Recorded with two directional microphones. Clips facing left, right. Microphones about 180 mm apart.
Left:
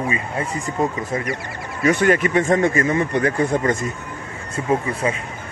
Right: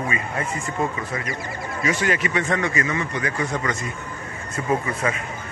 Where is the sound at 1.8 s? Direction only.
50° left (ahead or behind).